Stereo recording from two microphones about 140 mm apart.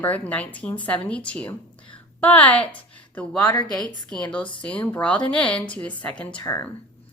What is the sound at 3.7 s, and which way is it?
Speech, 5° left (ahead or behind).